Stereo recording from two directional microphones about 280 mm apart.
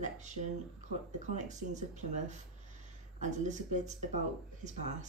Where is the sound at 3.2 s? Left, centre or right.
Right.